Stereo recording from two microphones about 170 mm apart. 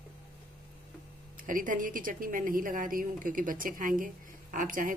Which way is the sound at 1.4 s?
50° right (ahead or behind).